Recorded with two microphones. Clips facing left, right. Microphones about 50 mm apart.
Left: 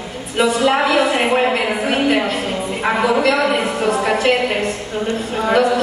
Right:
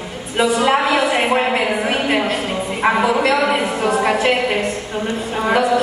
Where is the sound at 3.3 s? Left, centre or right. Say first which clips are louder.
Even; centre.